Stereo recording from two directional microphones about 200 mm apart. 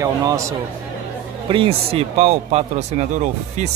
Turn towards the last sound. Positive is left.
turn(degrees=-35)  # may be behind; listen again after turning